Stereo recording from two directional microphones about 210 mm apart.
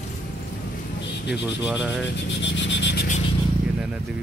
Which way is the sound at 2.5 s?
60° left (ahead or behind).